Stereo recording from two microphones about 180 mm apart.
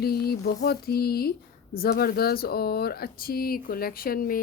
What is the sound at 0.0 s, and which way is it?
A woman's voice, 60° left (ahead or behind).